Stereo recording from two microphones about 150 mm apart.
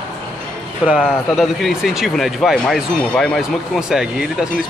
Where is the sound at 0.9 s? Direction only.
Centre (ahead or behind).